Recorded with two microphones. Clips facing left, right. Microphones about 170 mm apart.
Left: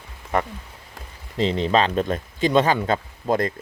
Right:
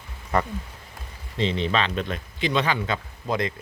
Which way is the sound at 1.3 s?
35° left (ahead or behind).